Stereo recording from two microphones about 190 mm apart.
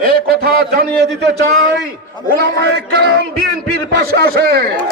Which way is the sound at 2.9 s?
60° right (ahead or behind).